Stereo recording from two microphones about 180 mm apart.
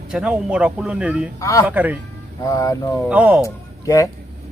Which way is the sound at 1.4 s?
15° left (ahead or behind).